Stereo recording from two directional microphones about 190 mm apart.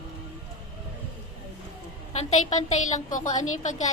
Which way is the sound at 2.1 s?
35° left (ahead or behind).